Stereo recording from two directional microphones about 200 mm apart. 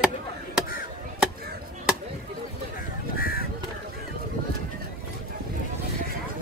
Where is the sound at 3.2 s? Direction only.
50° left (ahead or behind).